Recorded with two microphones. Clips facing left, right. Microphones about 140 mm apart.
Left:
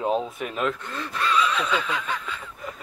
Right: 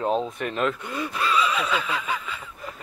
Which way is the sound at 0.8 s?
10° right (ahead or behind).